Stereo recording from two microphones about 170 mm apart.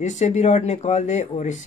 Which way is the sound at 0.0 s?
45° left (ahead or behind).